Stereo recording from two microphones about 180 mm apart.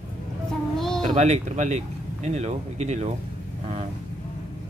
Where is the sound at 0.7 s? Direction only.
Centre (ahead or behind).